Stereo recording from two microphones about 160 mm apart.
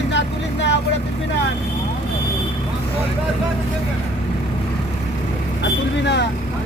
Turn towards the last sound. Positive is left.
turn(degrees=90)